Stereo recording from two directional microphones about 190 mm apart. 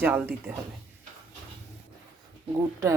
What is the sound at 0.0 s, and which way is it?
Speech, 10° right (ahead or behind).